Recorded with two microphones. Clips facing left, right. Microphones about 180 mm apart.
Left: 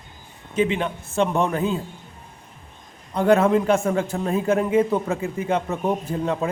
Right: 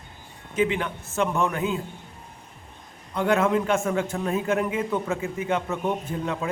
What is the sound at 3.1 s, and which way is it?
A man's voice, 35° left (ahead or behind).